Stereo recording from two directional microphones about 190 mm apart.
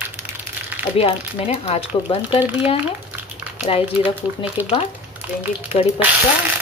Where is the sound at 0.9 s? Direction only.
30° left (ahead or behind).